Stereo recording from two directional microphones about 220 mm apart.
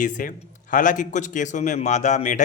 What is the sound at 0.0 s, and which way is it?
A man's voice, 35° left (ahead or behind).